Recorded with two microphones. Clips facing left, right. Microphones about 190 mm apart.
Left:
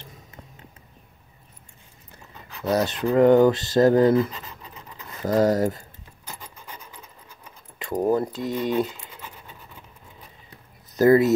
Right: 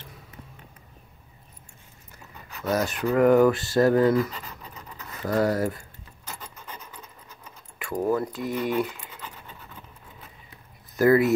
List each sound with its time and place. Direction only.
2.8 s speech: 20° left (ahead or behind)
5.2 s scratch: 20° left (ahead or behind)
7.9 s speech: 30° left (ahead or behind)
11.0 s speech: 20° left (ahead or behind)